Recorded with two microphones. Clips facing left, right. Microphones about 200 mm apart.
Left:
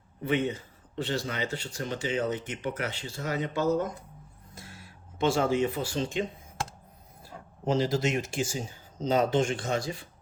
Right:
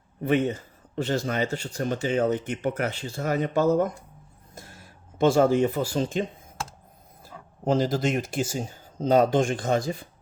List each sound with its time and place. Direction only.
0.2 s speech: 45° right (ahead or behind)
4.5 s speech: 45° right (ahead or behind)
7.7 s speech: 50° right (ahead or behind)